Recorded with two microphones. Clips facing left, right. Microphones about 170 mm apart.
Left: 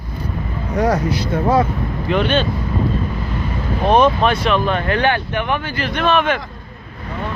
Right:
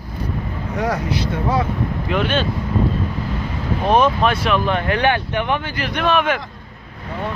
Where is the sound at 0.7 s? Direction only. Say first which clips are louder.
Left 4 dB; 40° left (ahead or behind).